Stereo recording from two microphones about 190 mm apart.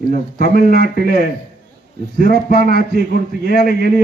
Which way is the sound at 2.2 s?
50° left (ahead or behind).